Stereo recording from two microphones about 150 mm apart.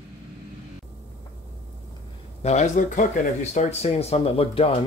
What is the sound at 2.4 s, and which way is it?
Speech, 50° left (ahead or behind).